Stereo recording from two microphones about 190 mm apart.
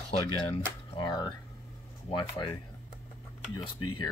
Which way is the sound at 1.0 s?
25° left (ahead or behind).